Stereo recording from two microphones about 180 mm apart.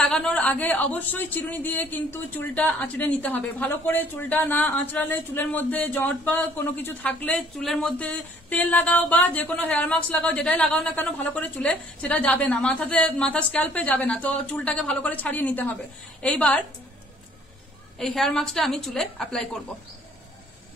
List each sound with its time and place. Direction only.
0.0 s a woman's voice: 5° left (ahead or behind)
17.9 s a woman's voice: centre (ahead or behind)